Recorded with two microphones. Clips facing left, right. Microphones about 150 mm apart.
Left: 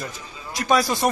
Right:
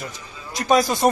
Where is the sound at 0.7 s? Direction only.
20° right (ahead or behind).